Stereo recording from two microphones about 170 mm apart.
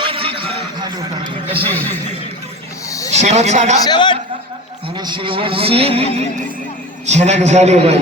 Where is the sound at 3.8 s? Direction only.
25° left (ahead or behind).